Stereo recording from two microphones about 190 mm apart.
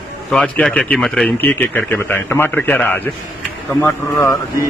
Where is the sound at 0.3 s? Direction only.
5° left (ahead or behind).